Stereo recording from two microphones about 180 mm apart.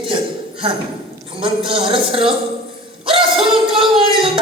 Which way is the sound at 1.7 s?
30° right (ahead or behind).